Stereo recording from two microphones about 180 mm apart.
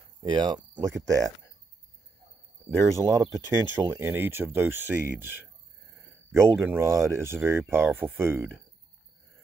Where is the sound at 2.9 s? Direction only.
20° right (ahead or behind).